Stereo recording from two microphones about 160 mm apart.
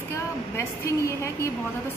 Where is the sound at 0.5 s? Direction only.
15° left (ahead or behind).